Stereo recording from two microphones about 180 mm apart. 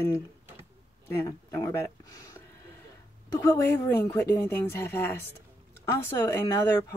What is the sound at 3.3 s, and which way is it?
Speech, 15° left (ahead or behind).